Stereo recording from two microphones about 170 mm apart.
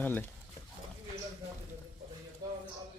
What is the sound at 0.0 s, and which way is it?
Speech, 10° left (ahead or behind).